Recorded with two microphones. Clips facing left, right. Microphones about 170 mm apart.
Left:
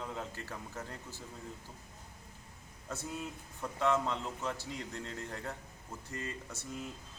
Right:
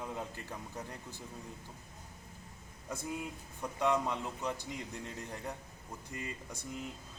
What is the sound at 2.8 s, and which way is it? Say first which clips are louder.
Speech: right 1 dB; 15° right (ahead or behind).